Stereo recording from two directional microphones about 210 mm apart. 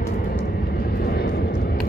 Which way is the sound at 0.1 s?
45° left (ahead or behind).